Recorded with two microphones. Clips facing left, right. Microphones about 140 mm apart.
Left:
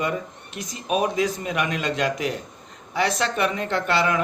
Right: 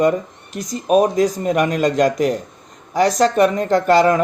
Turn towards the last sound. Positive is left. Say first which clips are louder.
# right 9 dB
turn(degrees=-40)  # may be behind; listen again after turning